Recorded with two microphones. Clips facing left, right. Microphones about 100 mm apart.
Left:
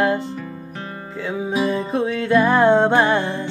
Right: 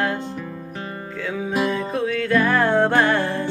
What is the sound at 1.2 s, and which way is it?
Music, 20° left (ahead or behind).